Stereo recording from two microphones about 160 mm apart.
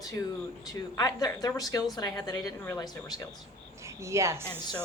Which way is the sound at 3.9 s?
20° right (ahead or behind).